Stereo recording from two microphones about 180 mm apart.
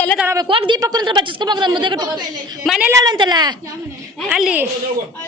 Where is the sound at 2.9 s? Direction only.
20° right (ahead or behind).